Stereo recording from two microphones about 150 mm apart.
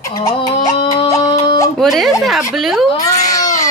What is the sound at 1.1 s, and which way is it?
Music, 25° left (ahead or behind).